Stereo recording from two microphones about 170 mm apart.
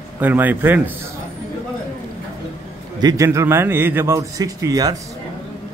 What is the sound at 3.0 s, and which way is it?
A man's voice, 20° right (ahead or behind).